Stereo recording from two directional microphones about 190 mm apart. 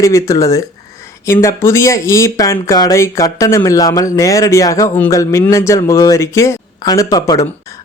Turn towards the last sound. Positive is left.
turn(degrees=20)  # may be behind; listen again after turning